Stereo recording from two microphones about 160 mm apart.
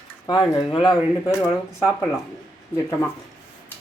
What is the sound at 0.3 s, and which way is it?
Speech, 25° left (ahead or behind).